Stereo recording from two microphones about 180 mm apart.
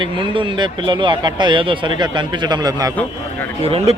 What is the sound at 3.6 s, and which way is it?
Speech, 35° right (ahead or behind).